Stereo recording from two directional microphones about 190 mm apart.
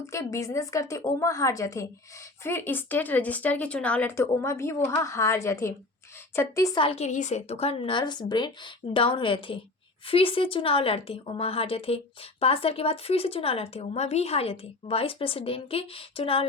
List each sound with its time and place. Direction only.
0.1 s a woman's voice: 15° left (ahead or behind)